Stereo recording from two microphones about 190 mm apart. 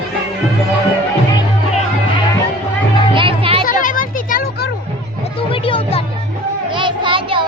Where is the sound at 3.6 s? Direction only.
45° left (ahead or behind).